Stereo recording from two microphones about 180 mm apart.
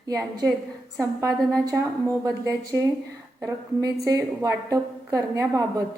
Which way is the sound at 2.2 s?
20° right (ahead or behind).